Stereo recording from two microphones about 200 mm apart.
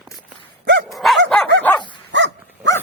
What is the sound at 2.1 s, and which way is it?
Dog, 60° right (ahead or behind).